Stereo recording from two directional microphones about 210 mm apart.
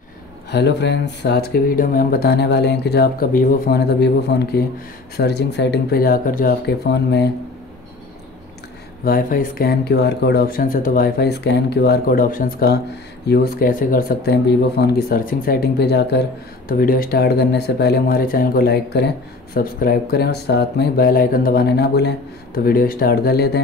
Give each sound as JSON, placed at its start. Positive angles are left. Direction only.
{"t": 0.5, "sound": "speech", "side_deg": 55}
{"t": 9.0, "sound": "speech", "side_deg": 45}